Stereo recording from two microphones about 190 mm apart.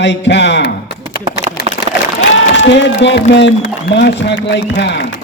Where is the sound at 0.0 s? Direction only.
65° left (ahead or behind).